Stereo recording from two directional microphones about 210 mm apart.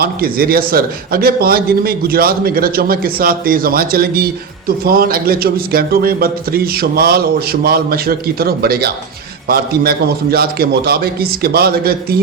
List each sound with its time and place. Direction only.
0.0 s a man's voice: 45° right (ahead or behind)